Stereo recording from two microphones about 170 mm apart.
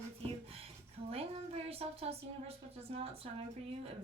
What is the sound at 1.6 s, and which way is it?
A woman's voice, 35° right (ahead or behind).